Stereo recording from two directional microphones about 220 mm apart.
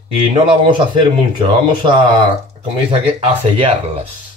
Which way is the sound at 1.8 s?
20° right (ahead or behind).